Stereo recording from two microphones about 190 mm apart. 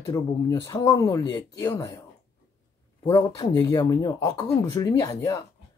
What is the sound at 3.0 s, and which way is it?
Speech, 15° left (ahead or behind).